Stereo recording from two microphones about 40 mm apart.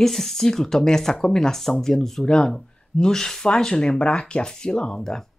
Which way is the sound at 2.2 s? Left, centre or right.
Centre.